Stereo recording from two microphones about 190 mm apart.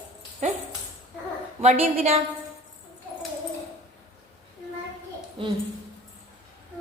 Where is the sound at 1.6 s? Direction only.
40° right (ahead or behind).